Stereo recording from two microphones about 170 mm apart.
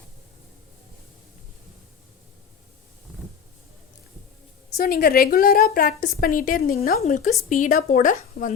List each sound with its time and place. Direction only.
4.8 s a woman's voice: 60° left (ahead or behind)
7.0 s speech: 45° left (ahead or behind)